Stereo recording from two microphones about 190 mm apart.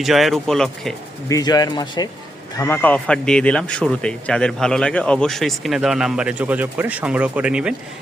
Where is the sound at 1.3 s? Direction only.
20° left (ahead or behind).